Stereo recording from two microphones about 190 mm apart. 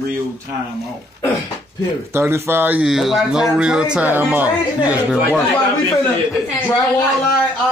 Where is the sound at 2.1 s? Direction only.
10° right (ahead or behind).